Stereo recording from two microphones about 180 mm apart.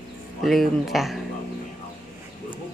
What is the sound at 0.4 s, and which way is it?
Speech, centre (ahead or behind).